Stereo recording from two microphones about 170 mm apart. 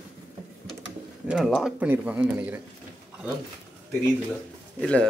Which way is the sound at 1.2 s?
Centre (ahead or behind).